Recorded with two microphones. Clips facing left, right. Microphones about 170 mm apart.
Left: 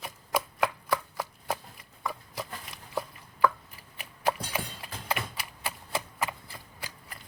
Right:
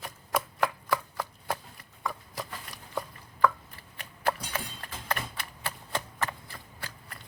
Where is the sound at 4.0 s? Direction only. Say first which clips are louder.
Left 1 dB; 10° left (ahead or behind).